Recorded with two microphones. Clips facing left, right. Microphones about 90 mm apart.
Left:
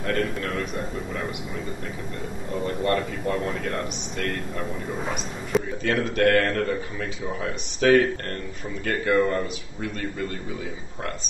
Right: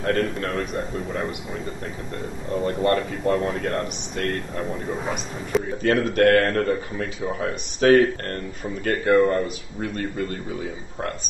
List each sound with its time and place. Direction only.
0.0 s a man's voice: 40° right (ahead or behind)
2.6 s speech: 40° right (ahead or behind)
5.0 s speech: centre (ahead or behind)
5.8 s a man's voice: 45° right (ahead or behind)